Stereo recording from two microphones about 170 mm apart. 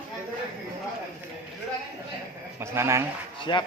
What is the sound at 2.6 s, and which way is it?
Speech, 15° right (ahead or behind).